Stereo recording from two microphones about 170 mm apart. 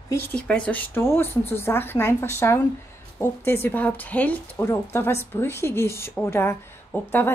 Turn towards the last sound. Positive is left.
turn(degrees=10)  # may be behind; listen again after turning